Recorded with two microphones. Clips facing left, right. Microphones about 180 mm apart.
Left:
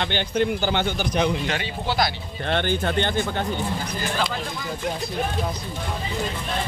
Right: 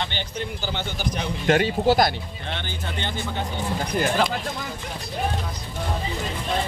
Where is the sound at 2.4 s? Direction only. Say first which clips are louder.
Left 11 dB; 60° left (ahead or behind).